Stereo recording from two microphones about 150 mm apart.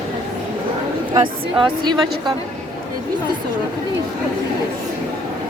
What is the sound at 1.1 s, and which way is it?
Speech, 30° right (ahead or behind).